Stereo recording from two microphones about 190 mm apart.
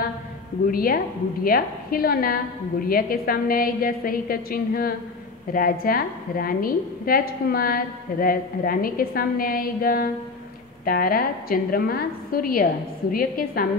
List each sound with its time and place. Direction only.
0.7 s a woman's voice: 50° left (ahead or behind)